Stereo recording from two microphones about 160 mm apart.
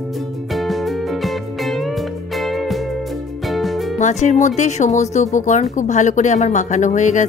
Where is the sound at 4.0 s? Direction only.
50° left (ahead or behind).